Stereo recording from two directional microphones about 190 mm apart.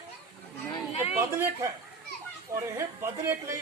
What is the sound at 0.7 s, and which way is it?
Speech, 30° left (ahead or behind).